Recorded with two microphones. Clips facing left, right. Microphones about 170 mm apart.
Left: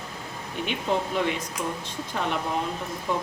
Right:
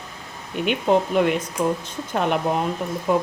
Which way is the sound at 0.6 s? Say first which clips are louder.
Right 8 dB; 60° right (ahead or behind).